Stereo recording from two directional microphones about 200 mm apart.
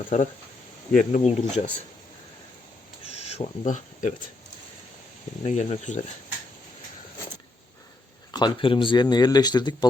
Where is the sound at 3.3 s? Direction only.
35° left (ahead or behind).